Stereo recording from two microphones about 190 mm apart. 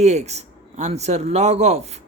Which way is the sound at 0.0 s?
35° right (ahead or behind).